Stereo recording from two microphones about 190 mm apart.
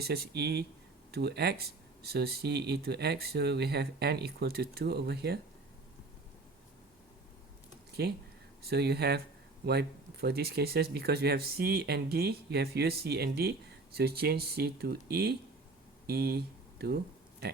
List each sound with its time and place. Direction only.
0.0 s speech: 55° right (ahead or behind)
8.0 s speech: 60° right (ahead or behind)